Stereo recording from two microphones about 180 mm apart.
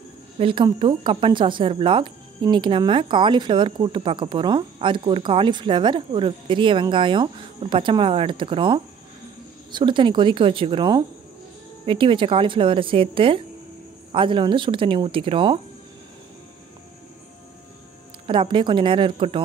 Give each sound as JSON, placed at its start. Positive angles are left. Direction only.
{"t": 0.4, "sound": "speech", "side_deg": -30}
{"t": 18.2, "sound": "speech", "side_deg": -30}